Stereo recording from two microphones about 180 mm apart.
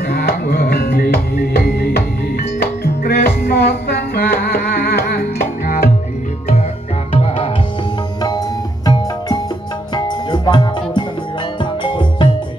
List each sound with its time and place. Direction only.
0.1 s music: 60° left (ahead or behind)
8.8 s music: 20° left (ahead or behind)